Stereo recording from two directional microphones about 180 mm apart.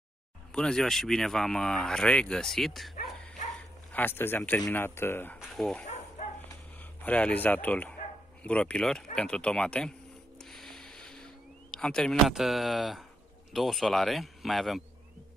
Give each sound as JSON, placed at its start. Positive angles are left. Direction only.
{"t": 0.5, "sound": "speech", "side_deg": 5}
{"t": 3.9, "sound": "speech", "side_deg": 10}
{"t": 5.4, "sound": "speech", "side_deg": 0}
{"t": 6.5, "sound": "a sound", "side_deg": 10}
{"t": 8.5, "sound": "speech", "side_deg": 5}
{"t": 10.4, "sound": "a sound", "side_deg": 0}
{"t": 13.5, "sound": "speech", "side_deg": 0}